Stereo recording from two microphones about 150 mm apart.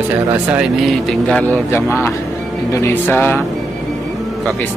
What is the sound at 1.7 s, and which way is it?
Speech, 15° left (ahead or behind).